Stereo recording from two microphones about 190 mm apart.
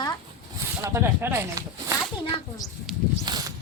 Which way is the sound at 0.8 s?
15° right (ahead or behind).